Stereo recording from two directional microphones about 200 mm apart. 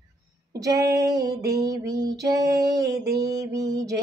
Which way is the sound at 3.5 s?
15° right (ahead or behind).